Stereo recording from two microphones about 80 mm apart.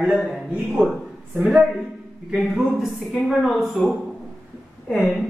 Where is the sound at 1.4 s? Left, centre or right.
Centre.